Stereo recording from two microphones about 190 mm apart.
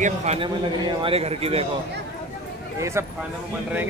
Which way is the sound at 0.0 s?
35° right (ahead or behind).